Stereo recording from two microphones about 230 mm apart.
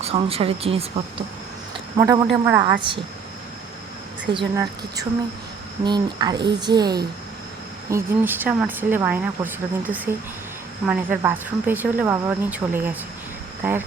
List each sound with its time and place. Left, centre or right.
0.0 s speech: right
2.0 s speech: centre
4.4 s speech: centre